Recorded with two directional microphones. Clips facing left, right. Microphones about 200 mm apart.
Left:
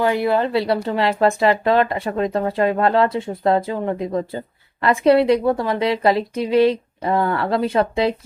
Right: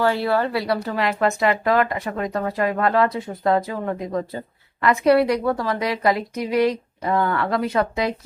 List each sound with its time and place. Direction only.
0.0 s speech: 15° left (ahead or behind)